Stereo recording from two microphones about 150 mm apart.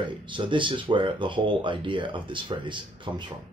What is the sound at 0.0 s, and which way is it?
Speech, 30° right (ahead or behind).